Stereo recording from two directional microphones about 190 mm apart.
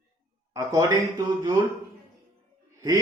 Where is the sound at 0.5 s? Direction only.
15° right (ahead or behind).